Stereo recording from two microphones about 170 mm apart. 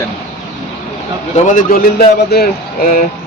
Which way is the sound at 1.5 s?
60° left (ahead or behind).